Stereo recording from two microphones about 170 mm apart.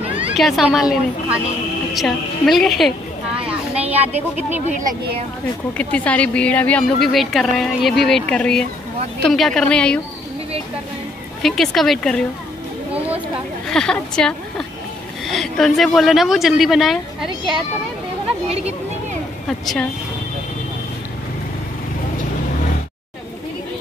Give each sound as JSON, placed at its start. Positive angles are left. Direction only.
{"t": 0.4, "sound": "a woman's voice", "side_deg": 0}
{"t": 4.6, "sound": "speech", "side_deg": -50}
{"t": 5.8, "sound": "a woman's voice", "side_deg": 5}
{"t": 11.4, "sound": "a woman's voice", "side_deg": 0}
{"t": 13.7, "sound": "a woman's voice", "side_deg": 5}
{"t": 19.6, "sound": "a woman's voice", "side_deg": 0}